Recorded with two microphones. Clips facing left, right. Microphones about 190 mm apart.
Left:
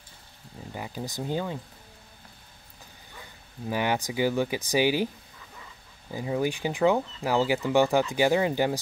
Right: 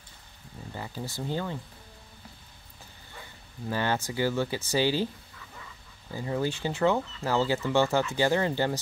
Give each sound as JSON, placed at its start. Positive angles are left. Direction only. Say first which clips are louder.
{"t": 0.7, "sound": "speech", "louder": "left 2 dB", "side_deg": 15}
{"t": 3.6, "sound": "speech", "louder": "left 2 dB", "side_deg": 15}
{"t": 6.1, "sound": "speech", "louder": "left 2 dB", "side_deg": 15}